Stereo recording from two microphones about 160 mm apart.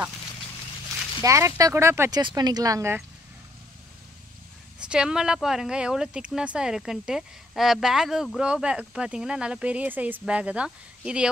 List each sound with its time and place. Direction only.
1.2 s speech: 20° right (ahead or behind)
4.7 s speech: 5° right (ahead or behind)